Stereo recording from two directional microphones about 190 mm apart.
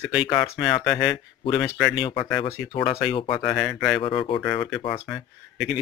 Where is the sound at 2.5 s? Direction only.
10° left (ahead or behind).